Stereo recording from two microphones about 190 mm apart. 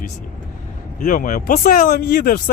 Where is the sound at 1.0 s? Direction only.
45° left (ahead or behind).